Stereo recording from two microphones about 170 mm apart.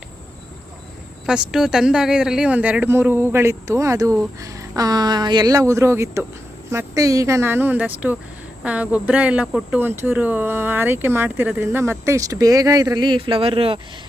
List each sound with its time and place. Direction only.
1.3 s speech: 5° right (ahead or behind); by 13.7 s 35° right (ahead or behind)